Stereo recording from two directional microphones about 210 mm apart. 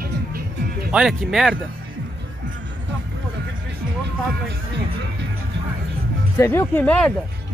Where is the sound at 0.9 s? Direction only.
Centre (ahead or behind).